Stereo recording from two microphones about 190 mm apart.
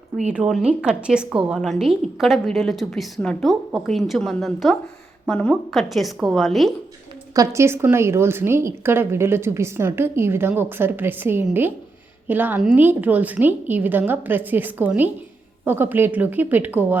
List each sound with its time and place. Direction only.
0.3 s a woman's voice: 5° right (ahead or behind)
7.3 s a woman's voice: 15° right (ahead or behind)